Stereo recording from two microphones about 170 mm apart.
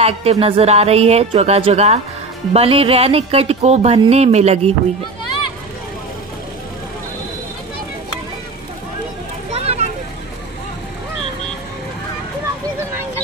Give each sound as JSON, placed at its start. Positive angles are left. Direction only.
{"t": 0.0, "sound": "a woman's voice", "side_deg": -35}
{"t": 9.5, "sound": "vehicle", "side_deg": -35}